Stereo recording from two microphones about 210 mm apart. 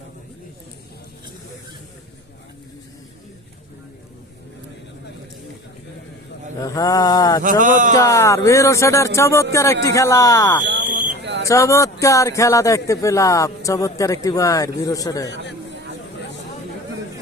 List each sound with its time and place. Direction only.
6.6 s speech: 15° left (ahead or behind)
7.4 s speech: 40° right (ahead or behind)
7.9 s speech: 15° left (ahead or behind)
10.7 s a sound: 55° right (ahead or behind)
11.4 s speech: 15° left (ahead or behind)